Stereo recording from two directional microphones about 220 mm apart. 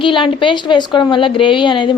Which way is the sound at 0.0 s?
20° left (ahead or behind).